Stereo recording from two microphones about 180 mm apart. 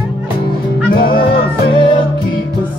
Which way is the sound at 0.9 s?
55° left (ahead or behind).